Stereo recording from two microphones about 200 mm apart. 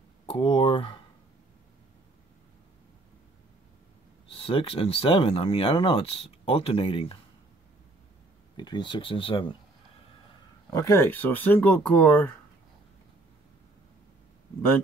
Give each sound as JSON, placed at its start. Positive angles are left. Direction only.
{"t": 0.3, "sound": "speech", "side_deg": 25}
{"t": 4.3, "sound": "speech", "side_deg": 25}
{"t": 8.5, "sound": "speech", "side_deg": 20}
{"t": 10.7, "sound": "speech", "side_deg": 15}